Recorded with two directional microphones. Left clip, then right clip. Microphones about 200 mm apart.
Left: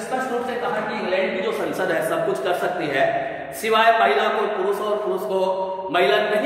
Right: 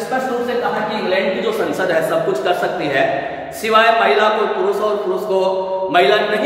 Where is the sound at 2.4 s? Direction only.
5° left (ahead or behind).